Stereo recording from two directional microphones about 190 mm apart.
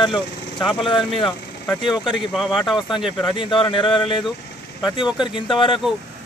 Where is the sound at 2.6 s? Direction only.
Centre (ahead or behind).